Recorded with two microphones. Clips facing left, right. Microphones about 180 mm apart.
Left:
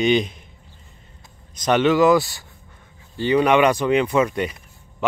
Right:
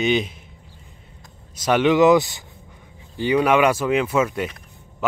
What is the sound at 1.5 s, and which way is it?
Speech, 5° right (ahead or behind).